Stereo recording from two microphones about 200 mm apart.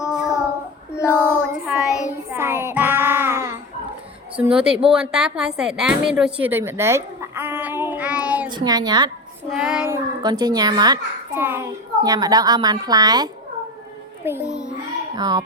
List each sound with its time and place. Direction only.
0.0 s child singing: 5° right (ahead or behind)
4.4 s a woman's voice: 5° right (ahead or behind)
8.4 s a child's voice: 20° right (ahead or behind)
9.5 s a woman's voice: 5° right (ahead or behind)
9.9 s a child's voice: 20° right (ahead or behind)
14.3 s a child's voice: 5° right (ahead or behind)
15.1 s a child's voice: 20° right (ahead or behind)